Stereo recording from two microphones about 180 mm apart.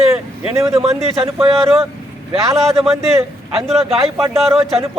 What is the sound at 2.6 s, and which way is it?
Speech, centre (ahead or behind).